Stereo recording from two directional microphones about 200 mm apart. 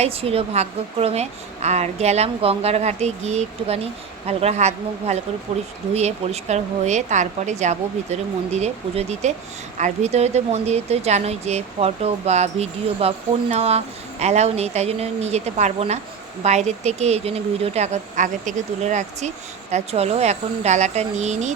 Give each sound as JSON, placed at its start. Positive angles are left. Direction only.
{"t": 0.0, "sound": "speech", "side_deg": -30}